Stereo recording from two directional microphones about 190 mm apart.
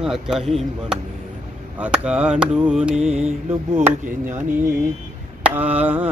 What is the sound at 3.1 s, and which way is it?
Mantra, 35° right (ahead or behind).